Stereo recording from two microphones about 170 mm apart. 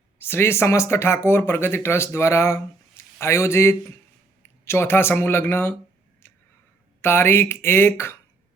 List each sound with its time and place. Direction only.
0.2 s speech: 15° left (ahead or behind)
7.0 s speech: 15° left (ahead or behind)